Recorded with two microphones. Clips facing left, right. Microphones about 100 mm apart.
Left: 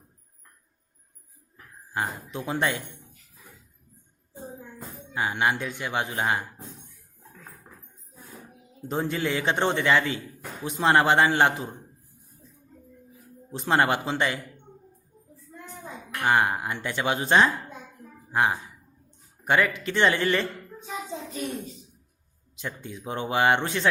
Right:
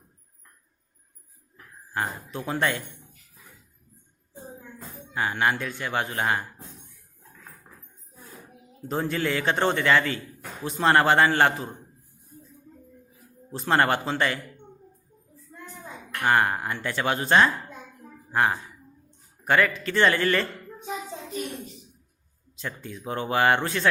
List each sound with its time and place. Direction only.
1.9 s speech: 15° left (ahead or behind)
4.8 s speech: 15° left (ahead or behind)
8.9 s speech: 15° left (ahead or behind)
13.5 s speech: 15° left (ahead or behind)
16.2 s a man's voice: 15° left (ahead or behind)
22.5 s a man's voice: 20° left (ahead or behind)